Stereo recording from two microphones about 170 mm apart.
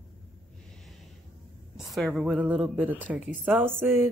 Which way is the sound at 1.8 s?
Centre (ahead or behind).